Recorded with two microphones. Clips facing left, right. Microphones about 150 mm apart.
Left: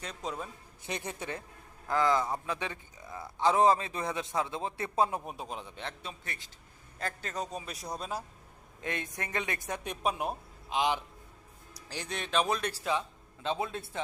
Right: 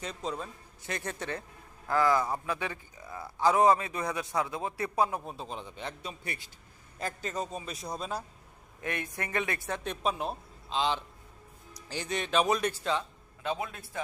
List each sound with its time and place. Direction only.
0.0 s a man's voice: centre (ahead or behind)
0.9 s a man's voice: 15° left (ahead or behind); by 6.1 s 5° right (ahead or behind)
6.2 s a man's voice: 15° right (ahead or behind)
7.0 s a man's voice: 5° right (ahead or behind)
8.8 s speech: 20° left (ahead or behind)
11.9 s a man's voice: centre (ahead or behind)
12.8 s speech: 15° left (ahead or behind)